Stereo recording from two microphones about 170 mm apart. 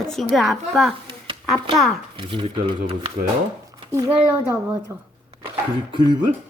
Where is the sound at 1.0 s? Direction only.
30° right (ahead or behind).